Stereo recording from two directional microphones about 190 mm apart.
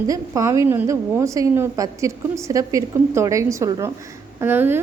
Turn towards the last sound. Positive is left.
turn(degrees=-10)  # may be behind; listen again after turning